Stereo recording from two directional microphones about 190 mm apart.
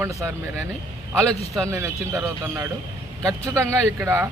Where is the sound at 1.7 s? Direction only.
15° right (ahead or behind).